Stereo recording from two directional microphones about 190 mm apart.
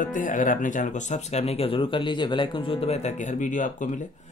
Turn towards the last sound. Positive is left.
turn(degrees=40)  # may be behind; listen again after turning